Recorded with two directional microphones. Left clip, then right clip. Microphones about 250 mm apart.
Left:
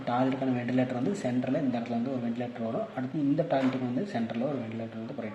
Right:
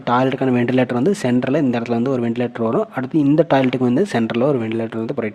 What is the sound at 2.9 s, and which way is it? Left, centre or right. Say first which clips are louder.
Speech: right 13 dB; right.